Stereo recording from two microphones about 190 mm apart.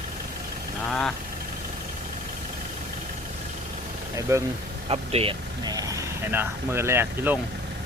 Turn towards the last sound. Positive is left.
turn(degrees=-10)  # may be behind; listen again after turning